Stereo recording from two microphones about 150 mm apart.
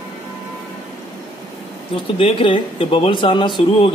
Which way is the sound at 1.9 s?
35° left (ahead or behind).